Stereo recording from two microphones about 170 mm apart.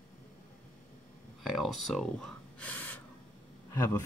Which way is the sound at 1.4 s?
Centre (ahead or behind).